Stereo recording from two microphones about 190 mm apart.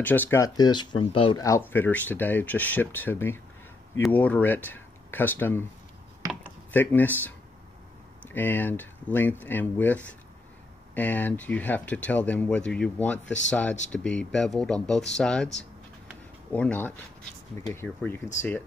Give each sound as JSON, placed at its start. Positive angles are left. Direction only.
{"t": 0.0, "sound": "speech", "side_deg": 10}
{"t": 1.4, "sound": "speech", "side_deg": 15}